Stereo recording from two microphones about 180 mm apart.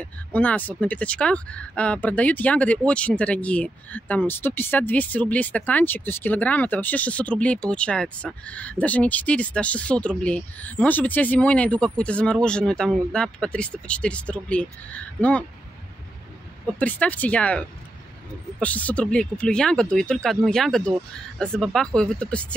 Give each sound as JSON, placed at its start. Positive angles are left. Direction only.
{"t": 0.0, "sound": "speech", "side_deg": 10}
{"t": 16.7, "sound": "speech", "side_deg": 10}